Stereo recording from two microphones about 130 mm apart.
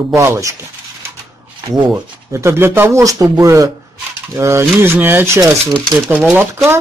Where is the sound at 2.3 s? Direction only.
20° right (ahead or behind).